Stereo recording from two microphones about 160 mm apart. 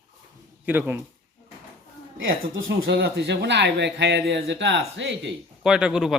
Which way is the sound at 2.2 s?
80° right.